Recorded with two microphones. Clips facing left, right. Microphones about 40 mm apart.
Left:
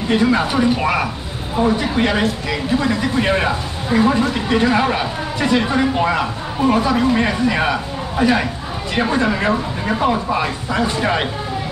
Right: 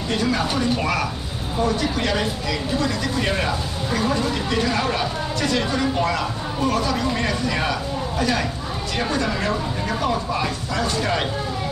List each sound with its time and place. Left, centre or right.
0.1 s speech: left